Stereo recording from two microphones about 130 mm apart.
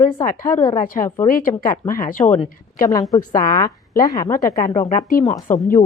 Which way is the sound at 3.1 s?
25° left (ahead or behind).